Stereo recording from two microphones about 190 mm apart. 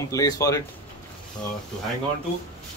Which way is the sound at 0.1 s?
20° left (ahead or behind).